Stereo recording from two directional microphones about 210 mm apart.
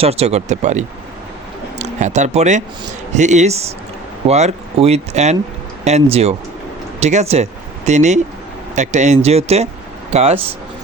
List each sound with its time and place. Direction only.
0.0 s speech: 30° right (ahead or behind)